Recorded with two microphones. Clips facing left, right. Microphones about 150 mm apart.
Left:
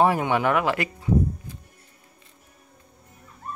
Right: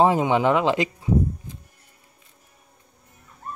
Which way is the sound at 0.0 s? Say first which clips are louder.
Right 2 dB; 20° right (ahead or behind).